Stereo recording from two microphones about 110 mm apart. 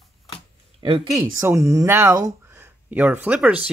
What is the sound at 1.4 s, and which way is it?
Speech, 25° right (ahead or behind).